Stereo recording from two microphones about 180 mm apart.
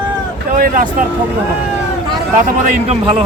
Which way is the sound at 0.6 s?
50° right (ahead or behind).